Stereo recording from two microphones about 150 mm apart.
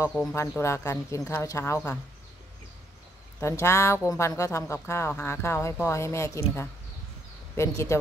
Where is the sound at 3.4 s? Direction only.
20° left (ahead or behind).